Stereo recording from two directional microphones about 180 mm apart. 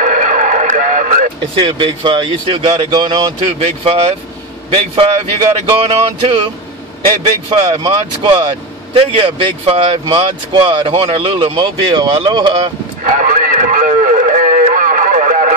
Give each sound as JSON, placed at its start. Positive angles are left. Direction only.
{"t": 0.0, "sound": "radio", "side_deg": -45}
{"t": 1.4, "sound": "speech", "side_deg": -30}
{"t": 3.4, "sound": "music", "side_deg": -35}
{"t": 5.7, "sound": "music", "side_deg": -30}
{"t": 7.4, "sound": "speech", "side_deg": -30}
{"t": 13.0, "sound": "radio", "side_deg": -45}